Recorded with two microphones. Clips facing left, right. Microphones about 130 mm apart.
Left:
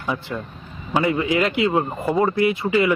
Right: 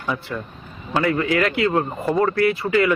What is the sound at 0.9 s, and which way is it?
A man's voice, 15° left (ahead or behind).